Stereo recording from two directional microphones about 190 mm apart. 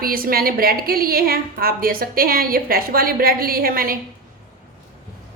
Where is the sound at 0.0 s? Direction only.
50° right (ahead or behind).